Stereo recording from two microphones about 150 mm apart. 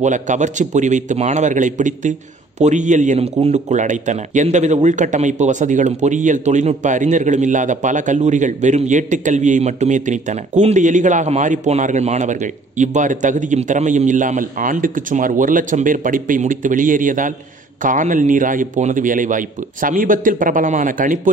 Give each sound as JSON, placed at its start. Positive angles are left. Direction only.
{"t": 0.0, "sound": "a man's voice", "side_deg": -55}